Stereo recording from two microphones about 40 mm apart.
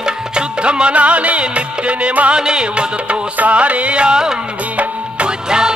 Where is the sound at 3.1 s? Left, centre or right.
Right.